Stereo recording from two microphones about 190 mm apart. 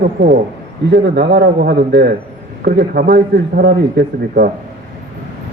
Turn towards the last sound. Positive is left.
turn(degrees=-50)  # may be behind; listen again after turning